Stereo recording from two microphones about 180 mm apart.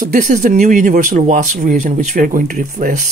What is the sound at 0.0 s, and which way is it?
Speech, 50° right (ahead or behind).